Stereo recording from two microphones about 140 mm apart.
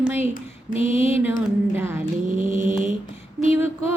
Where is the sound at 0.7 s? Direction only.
45° left (ahead or behind).